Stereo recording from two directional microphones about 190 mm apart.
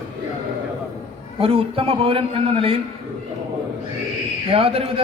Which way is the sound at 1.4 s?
30° right (ahead or behind).